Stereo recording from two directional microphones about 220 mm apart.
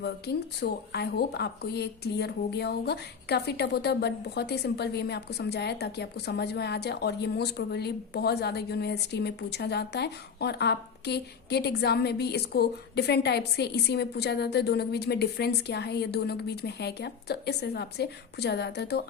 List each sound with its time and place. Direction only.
0.0 s speech: 50° left (ahead or behind)